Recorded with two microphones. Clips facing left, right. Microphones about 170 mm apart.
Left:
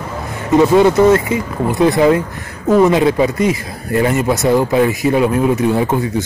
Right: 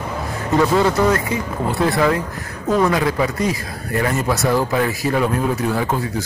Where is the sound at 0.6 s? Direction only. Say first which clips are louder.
Left 6 dB; 20° left (ahead or behind).